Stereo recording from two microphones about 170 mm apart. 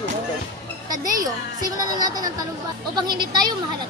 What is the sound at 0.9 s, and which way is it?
A woman's voice, 20° right (ahead or behind).